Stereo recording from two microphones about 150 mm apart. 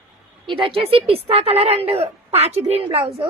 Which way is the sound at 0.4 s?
35° right (ahead or behind).